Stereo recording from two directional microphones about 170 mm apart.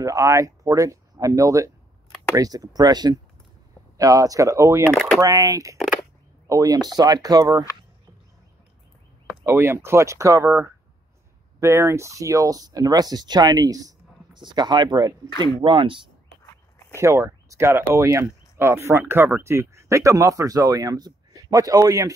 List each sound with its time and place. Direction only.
0.0 s speech: 20° right (ahead or behind)
4.9 s a sound: centre (ahead or behind)
5.2 s speech: 20° right (ahead or behind)
9.4 s speech: 15° right (ahead or behind)
16.9 s speech: 15° right (ahead or behind)